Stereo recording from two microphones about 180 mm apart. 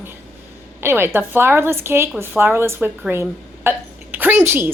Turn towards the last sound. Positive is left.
turn(degrees=-10)  # may be behind; listen again after turning